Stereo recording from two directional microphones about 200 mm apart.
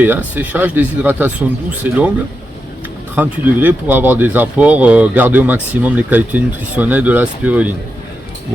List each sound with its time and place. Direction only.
0.0 s speech: 10° right (ahead or behind)
3.2 s speech: 10° right (ahead or behind)